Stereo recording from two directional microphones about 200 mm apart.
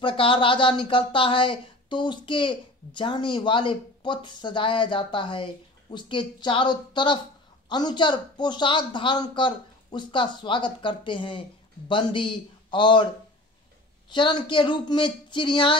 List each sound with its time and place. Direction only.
0.0 s speech: 25° left (ahead or behind)
14.1 s speech: 25° left (ahead or behind)